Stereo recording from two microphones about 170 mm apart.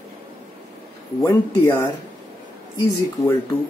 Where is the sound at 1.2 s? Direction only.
15° left (ahead or behind).